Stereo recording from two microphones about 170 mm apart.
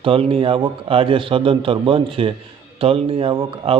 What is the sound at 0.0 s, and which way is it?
A man's voice, 30° right (ahead or behind).